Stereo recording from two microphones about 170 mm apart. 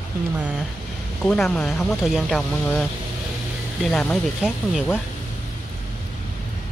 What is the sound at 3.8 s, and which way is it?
Speech, 5° left (ahead or behind).